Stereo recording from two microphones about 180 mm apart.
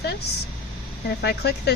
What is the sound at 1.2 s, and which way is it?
Speech, 65° left (ahead or behind).